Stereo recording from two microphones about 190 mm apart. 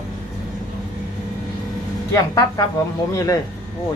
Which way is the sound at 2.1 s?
20° left (ahead or behind).